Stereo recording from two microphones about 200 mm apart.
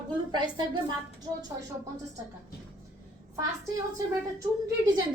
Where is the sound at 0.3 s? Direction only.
20° right (ahead or behind).